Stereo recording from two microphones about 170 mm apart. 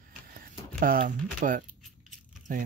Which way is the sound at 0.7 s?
55° right (ahead or behind).